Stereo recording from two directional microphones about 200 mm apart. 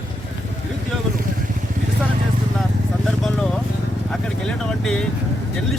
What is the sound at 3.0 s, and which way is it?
Speech, 5° left (ahead or behind).